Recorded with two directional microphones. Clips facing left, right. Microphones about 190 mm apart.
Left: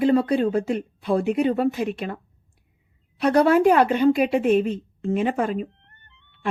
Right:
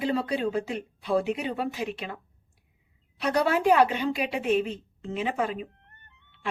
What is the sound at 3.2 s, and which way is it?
A woman's voice, 50° left (ahead or behind).